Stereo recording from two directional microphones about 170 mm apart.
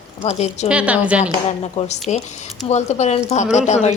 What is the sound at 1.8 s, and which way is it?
A woman's voice, 45° left (ahead or behind).